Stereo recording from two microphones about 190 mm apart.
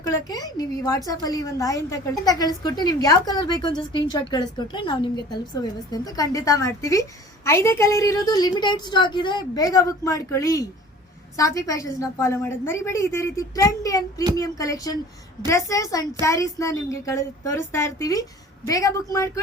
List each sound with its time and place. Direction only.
0.1 s a woman's voice: 20° left (ahead or behind)